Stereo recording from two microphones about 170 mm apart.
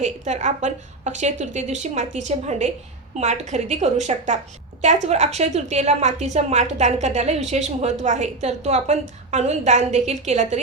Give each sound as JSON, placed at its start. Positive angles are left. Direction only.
{"t": 0.0, "sound": "a woman's voice", "side_deg": -45}